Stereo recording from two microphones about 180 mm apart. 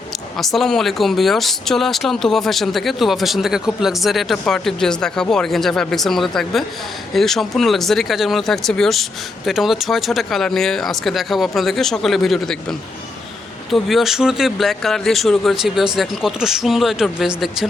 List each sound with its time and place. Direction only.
0.3 s speech: centre (ahead or behind)
13.7 s speech: centre (ahead or behind)